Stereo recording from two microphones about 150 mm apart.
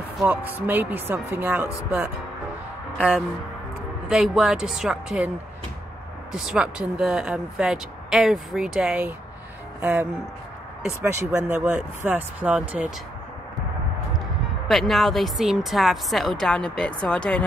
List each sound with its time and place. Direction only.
0.3 s speech: 10° right (ahead or behind)
3.0 s speech: centre (ahead or behind)
6.3 s speech: 5° right (ahead or behind)
14.7 s speech: centre (ahead or behind)